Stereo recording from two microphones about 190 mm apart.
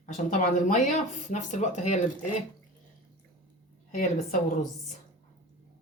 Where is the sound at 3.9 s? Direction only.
45° left (ahead or behind).